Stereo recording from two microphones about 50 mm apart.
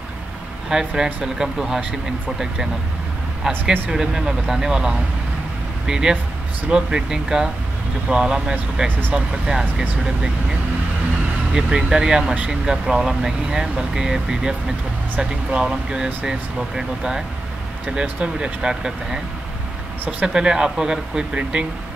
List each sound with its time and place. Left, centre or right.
0.7 s speech: centre
3.4 s speech: centre
11.5 s speech: centre
18.2 s speech: centre
20.3 s speech: centre